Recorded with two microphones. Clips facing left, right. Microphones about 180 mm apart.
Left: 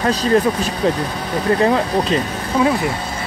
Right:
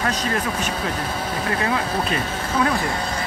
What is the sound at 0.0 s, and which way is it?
Speech, 35° left (ahead or behind).